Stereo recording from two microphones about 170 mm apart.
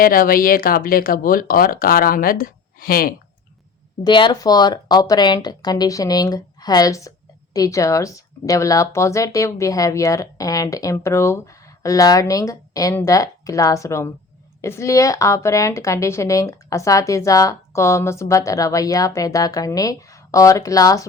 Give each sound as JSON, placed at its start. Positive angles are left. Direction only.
{"t": 0.0, "sound": "speech", "side_deg": 55}
{"t": 4.0, "sound": "speech", "side_deg": 25}